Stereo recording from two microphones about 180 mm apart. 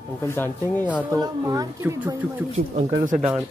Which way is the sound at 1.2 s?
20° right (ahead or behind).